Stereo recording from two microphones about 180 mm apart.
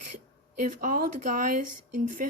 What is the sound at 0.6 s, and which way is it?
Speech, 50° right (ahead or behind).